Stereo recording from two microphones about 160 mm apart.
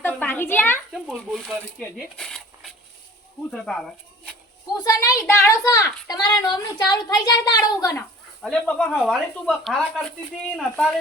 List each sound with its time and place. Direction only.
0.0 s a sound: 10° left (ahead or behind)
0.9 s speech: centre (ahead or behind)
4.8 s speech: 20° left (ahead or behind)
8.4 s speech: 5° left (ahead or behind)